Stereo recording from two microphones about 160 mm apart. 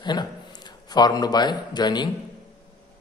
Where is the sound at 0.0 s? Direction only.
25° left (ahead or behind).